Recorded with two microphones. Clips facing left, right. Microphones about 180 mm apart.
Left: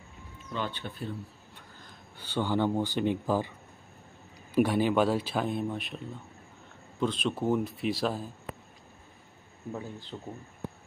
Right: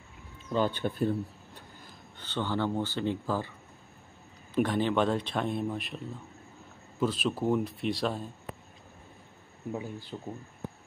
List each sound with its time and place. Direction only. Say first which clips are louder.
0.5 s speech: right 7 dB; 40° right (ahead or behind)
2.1 s speech: left 3 dB; 10° left (ahead or behind)
4.6 s speech: left 2 dB; 10° left (ahead or behind)
7.0 s speech: even; 5° right (ahead or behind)
9.7 s speech: right 2 dB; 10° right (ahead or behind)